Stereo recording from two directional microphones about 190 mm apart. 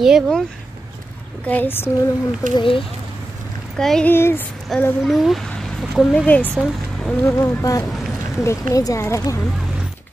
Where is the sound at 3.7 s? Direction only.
5° left (ahead or behind).